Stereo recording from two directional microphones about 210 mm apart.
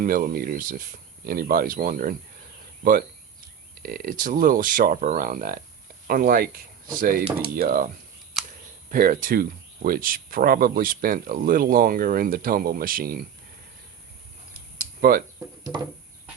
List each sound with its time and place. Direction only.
0.0 s speech: 40° right (ahead or behind)
3.8 s speech: 45° right (ahead or behind)
8.9 s speech: 40° right (ahead or behind)
15.0 s speech: 45° right (ahead or behind)